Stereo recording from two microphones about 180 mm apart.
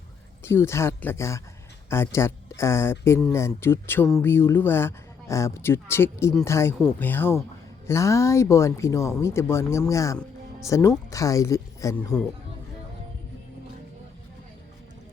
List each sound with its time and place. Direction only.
0.4 s speech: 15° left (ahead or behind)